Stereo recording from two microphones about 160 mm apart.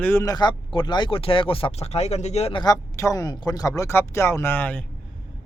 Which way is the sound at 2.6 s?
20° left (ahead or behind).